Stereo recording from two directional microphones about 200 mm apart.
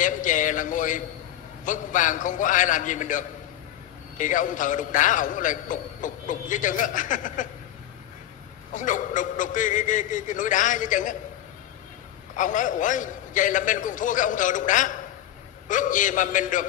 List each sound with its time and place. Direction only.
0.0 s a sound: 40° left (ahead or behind)
1.6 s a man's voice: 40° left (ahead or behind)
8.7 s a man's voice: 40° left (ahead or behind)
12.4 s a man's voice: 40° left (ahead or behind)